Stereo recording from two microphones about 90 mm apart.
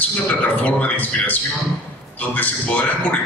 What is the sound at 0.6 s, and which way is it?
A man's voice, 20° left (ahead or behind).